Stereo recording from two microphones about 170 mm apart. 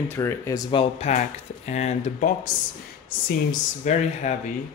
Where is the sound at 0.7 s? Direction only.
45° left (ahead or behind).